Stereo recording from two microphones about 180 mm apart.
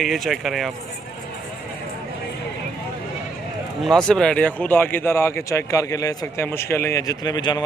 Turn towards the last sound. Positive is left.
turn(degrees=25)  # may be behind; listen again after turning